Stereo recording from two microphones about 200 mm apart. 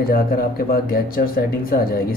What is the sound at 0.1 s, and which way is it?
Speech, 50° left (ahead or behind).